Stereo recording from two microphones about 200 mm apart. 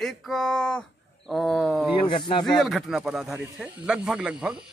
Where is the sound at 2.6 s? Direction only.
Centre (ahead or behind).